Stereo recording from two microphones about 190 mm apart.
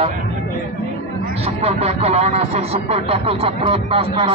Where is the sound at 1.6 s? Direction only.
35° right (ahead or behind).